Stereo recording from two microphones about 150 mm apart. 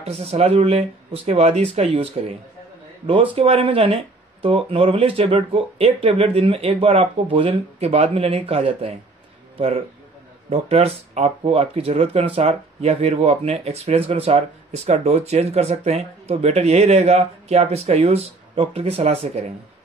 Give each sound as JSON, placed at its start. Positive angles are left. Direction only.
{"t": 0.0, "sound": "speech", "side_deg": -45}
{"t": 10.5, "sound": "speech", "side_deg": -45}